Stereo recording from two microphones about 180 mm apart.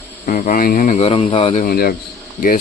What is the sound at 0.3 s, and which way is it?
Speech, 50° left (ahead or behind).